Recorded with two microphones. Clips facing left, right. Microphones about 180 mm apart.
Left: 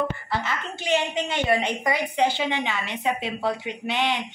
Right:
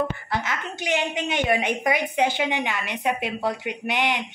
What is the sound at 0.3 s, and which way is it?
A woman's voice, 15° right (ahead or behind).